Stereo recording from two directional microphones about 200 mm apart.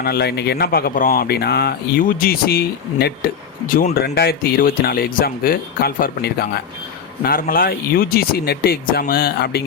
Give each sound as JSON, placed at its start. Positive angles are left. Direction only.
{"t": 0.0, "sound": "speech", "side_deg": 55}